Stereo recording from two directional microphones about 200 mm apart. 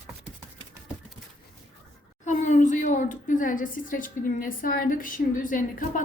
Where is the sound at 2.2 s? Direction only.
40° left (ahead or behind).